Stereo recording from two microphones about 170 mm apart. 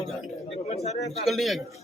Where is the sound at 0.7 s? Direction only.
40° left (ahead or behind).